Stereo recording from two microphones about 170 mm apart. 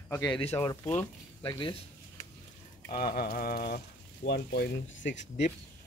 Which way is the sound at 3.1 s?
60° left (ahead or behind).